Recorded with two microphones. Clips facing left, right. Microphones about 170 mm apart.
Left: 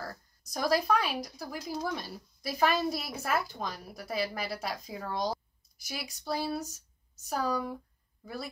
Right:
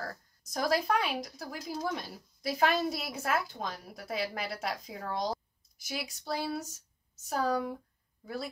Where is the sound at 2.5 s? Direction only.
20° right (ahead or behind).